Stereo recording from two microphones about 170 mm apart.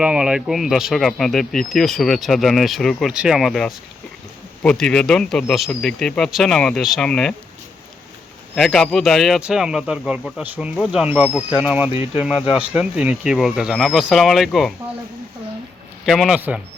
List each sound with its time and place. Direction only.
0.0 s speech: 5° right (ahead or behind)
8.5 s speech: centre (ahead or behind)
16.0 s speech: centre (ahead or behind)